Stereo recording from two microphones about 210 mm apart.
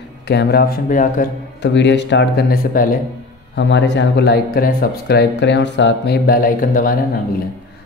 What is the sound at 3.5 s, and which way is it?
Speech, 55° left (ahead or behind).